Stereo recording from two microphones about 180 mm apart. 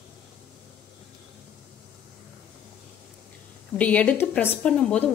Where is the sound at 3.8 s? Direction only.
10° left (ahead or behind).